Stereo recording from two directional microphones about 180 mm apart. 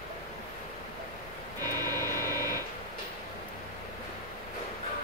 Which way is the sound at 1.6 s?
20° right (ahead or behind).